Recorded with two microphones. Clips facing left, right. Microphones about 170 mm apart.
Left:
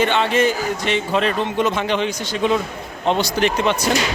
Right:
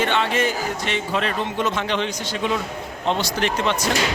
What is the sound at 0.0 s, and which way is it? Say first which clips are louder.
A man's voice: left 4 dB; 20° left (ahead or behind).